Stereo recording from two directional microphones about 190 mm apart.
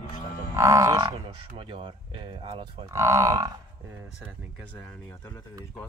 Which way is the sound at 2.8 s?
15° right (ahead or behind).